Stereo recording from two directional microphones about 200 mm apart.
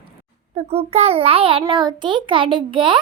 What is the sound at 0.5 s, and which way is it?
A child's voice, 30° right (ahead or behind).